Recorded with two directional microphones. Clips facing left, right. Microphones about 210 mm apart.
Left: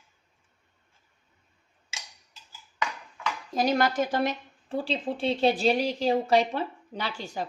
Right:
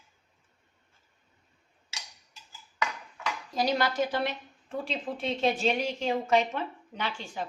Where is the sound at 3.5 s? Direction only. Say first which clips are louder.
Left 3 dB; 50° left (ahead or behind).